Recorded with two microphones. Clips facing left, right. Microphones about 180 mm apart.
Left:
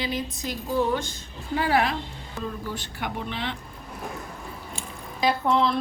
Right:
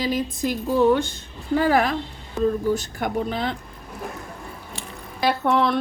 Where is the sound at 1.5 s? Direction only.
45° right (ahead or behind).